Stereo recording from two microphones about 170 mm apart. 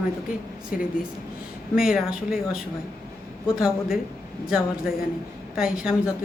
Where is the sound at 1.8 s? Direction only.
5° right (ahead or behind).